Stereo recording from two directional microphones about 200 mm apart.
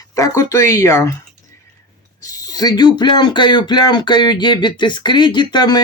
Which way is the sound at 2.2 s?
15° left (ahead or behind).